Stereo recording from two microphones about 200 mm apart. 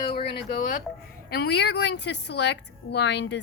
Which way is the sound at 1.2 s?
55° left (ahead or behind).